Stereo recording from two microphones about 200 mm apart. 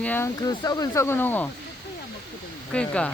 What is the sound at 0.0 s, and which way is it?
Speech, 10° left (ahead or behind).